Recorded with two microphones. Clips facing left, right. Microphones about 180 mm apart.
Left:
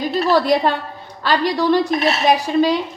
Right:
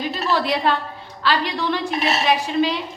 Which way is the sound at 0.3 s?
40° left (ahead or behind).